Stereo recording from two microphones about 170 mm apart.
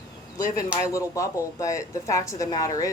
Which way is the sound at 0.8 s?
20° left (ahead or behind).